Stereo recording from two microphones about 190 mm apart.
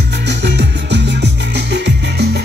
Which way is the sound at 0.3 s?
65° right (ahead or behind).